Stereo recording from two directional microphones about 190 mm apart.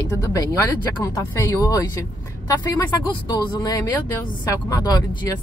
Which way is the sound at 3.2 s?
20° left (ahead or behind).